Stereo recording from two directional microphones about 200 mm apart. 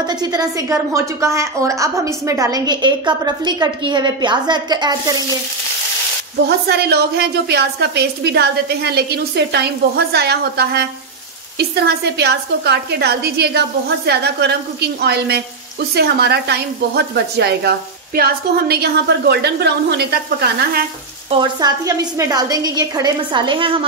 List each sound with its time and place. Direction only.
0.0 s a woman's voice: 20° right (ahead or behind)
6.4 s speech: 55° right (ahead or behind)
21.3 s a woman's voice: 20° right (ahead or behind)